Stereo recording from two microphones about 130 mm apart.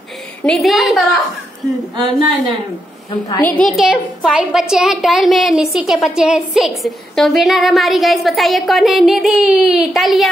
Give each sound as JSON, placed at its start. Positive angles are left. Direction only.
{"t": 0.4, "sound": "a woman's voice", "side_deg": 5}
{"t": 2.1, "sound": "a woman's voice", "side_deg": -40}
{"t": 3.3, "sound": "a woman's voice", "side_deg": 20}
{"t": 3.5, "sound": "a woman's voice", "side_deg": 0}